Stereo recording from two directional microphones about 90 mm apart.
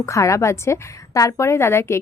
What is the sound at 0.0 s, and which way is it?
A woman's voice, 35° left (ahead or behind).